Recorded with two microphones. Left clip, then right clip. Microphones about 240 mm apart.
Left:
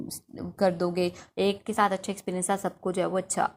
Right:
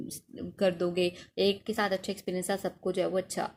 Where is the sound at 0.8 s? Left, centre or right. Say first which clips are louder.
Left 2 dB; left.